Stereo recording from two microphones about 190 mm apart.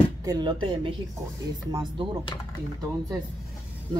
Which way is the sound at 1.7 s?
25° right (ahead or behind).